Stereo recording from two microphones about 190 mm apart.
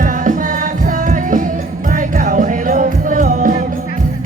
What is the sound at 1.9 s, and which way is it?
Music, 45° right (ahead or behind).